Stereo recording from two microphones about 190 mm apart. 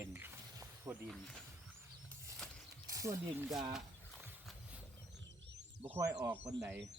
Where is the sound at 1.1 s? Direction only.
5° left (ahead or behind).